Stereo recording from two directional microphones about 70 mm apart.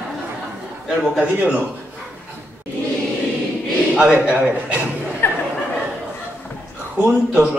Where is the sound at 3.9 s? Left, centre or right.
Centre.